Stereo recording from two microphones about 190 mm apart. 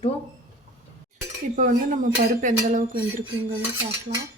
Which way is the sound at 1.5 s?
45° right (ahead or behind).